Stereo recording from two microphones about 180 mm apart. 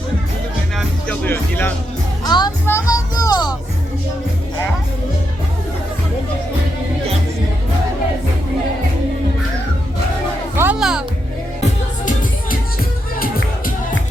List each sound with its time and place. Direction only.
0.8 s music: 10° left (ahead or behind)
2.2 s music: 25° left (ahead or behind)
10.5 s music: 10° right (ahead or behind)
13.2 s music: 50° left (ahead or behind)